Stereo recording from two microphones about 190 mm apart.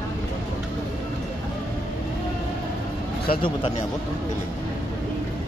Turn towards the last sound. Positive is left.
turn(degrees=30)  # may be behind; listen again after turning